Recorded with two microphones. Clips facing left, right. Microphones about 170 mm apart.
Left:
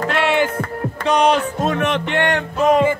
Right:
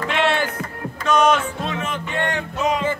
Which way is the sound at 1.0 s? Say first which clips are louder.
Left 1 dB; 35° left (ahead or behind).